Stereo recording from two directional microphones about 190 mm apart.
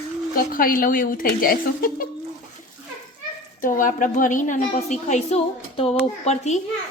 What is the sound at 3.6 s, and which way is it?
A child's voice, 45° left (ahead or behind).